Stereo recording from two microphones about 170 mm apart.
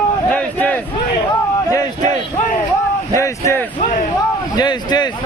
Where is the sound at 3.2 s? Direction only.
15° left (ahead or behind).